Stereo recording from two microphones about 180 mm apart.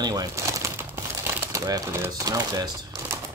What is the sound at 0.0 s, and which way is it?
Crumpling, 20° right (ahead or behind).